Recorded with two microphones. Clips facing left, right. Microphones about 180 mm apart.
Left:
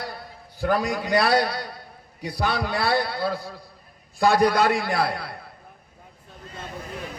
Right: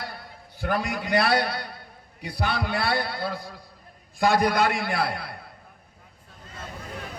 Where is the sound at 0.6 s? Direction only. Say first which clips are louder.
Left 4 dB; 35° left (ahead or behind).